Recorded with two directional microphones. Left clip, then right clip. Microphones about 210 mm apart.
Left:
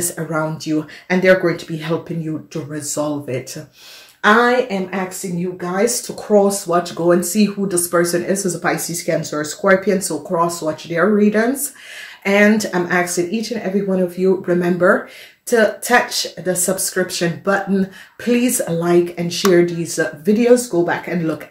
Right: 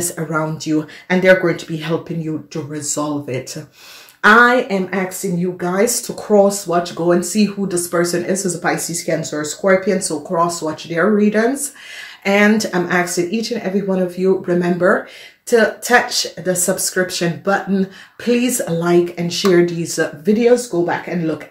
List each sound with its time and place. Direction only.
0.0 s speech: centre (ahead or behind)
4.2 s speech: 25° right (ahead or behind)
6.2 s speech: 5° right (ahead or behind)